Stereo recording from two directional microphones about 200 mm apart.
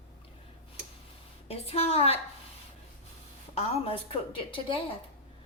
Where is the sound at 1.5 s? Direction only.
30° left (ahead or behind).